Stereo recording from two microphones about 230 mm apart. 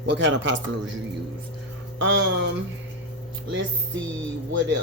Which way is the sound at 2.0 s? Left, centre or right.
Right.